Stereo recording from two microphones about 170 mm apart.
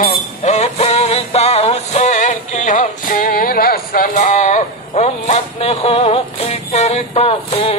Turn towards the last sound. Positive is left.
turn(degrees=35)  # may be behind; listen again after turning